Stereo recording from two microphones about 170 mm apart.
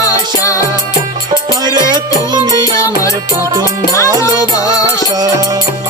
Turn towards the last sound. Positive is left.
turn(degrees=20)  # may be behind; listen again after turning